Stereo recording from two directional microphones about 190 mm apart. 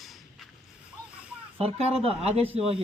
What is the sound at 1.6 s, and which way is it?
Speech, 30° right (ahead or behind).